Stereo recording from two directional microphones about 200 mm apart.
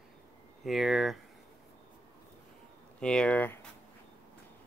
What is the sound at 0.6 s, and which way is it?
Speech, centre (ahead or behind).